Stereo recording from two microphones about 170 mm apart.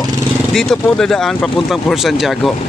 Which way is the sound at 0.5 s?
5° left (ahead or behind).